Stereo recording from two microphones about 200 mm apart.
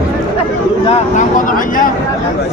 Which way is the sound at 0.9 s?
40° left (ahead or behind).